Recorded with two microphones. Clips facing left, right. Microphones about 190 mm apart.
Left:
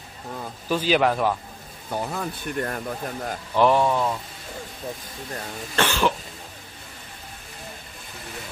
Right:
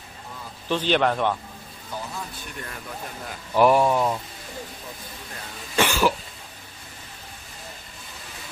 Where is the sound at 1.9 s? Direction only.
60° left (ahead or behind).